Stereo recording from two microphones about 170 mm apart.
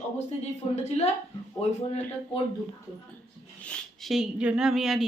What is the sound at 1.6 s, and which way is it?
Speech, 40° left (ahead or behind).